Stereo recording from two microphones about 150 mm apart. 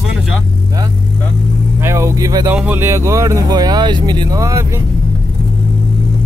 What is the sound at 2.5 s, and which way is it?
Speech, 10° right (ahead or behind).